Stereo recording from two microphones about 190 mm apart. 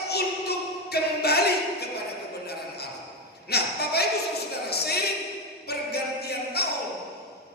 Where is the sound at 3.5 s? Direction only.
55° left (ahead or behind).